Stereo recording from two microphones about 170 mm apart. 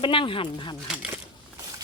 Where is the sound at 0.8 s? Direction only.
5° right (ahead or behind).